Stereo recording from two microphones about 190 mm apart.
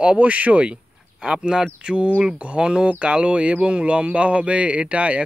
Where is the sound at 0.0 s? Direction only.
5° right (ahead or behind).